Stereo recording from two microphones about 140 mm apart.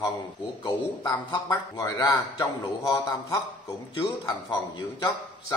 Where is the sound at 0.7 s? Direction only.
30° left (ahead or behind).